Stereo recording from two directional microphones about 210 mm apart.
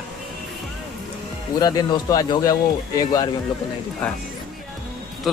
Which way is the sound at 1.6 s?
20° left (ahead or behind).